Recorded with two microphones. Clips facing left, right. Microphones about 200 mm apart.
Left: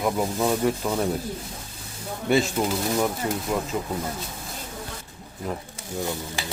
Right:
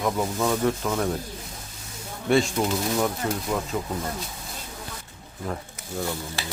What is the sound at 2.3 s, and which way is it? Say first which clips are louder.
Speech: even; 5° left (ahead or behind).